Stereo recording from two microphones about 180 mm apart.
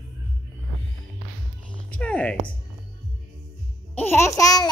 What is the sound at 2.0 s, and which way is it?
Music, 5° left (ahead or behind).